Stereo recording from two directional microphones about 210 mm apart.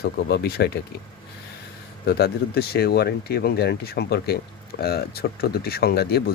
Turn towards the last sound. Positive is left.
turn(degrees=50)  # may be behind; listen again after turning